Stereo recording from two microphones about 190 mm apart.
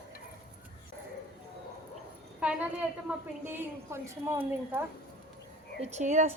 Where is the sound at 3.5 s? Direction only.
15° right (ahead or behind).